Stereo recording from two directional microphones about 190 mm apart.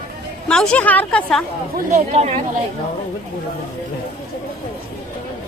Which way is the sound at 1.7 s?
35° right (ahead or behind).